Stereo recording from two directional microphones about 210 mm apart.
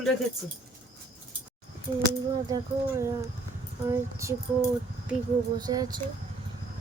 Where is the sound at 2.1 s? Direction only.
15° right (ahead or behind).